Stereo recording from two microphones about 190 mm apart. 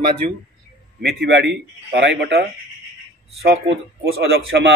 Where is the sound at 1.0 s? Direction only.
60° right (ahead or behind).